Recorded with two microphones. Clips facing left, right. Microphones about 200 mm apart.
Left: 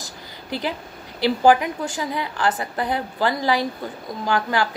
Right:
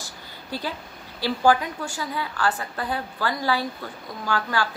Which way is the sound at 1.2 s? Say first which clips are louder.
Left 4 dB; 15° left (ahead or behind).